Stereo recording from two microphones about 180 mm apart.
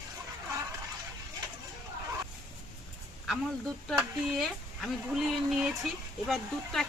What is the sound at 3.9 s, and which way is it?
Speech, centre (ahead or behind).